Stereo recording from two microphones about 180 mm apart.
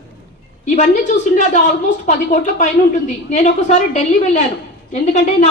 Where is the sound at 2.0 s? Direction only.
45° left (ahead or behind).